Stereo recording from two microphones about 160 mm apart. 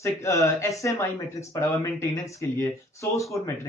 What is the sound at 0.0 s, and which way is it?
A man's voice, 20° left (ahead or behind).